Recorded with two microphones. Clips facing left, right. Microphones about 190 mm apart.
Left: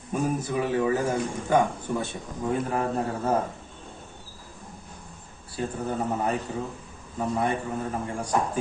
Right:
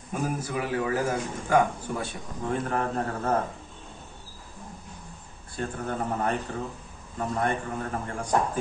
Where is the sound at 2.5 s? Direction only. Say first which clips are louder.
Left 1 dB; 10° left (ahead or behind).